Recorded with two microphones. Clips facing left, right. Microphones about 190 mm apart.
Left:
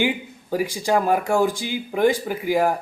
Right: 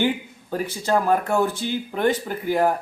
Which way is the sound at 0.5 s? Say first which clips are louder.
Left 2 dB; 10° left (ahead or behind).